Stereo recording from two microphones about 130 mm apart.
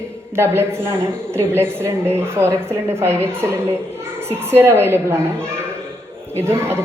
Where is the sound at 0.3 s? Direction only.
20° right (ahead or behind).